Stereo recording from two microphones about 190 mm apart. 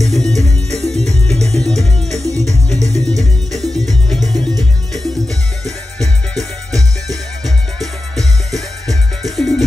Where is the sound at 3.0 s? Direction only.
Centre (ahead or behind).